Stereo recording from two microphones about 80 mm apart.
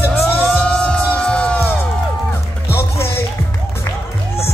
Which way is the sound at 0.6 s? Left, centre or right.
Centre.